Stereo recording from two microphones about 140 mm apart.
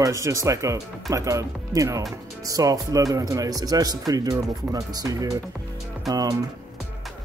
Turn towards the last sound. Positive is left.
turn(degrees=-25)  # may be behind; listen again after turning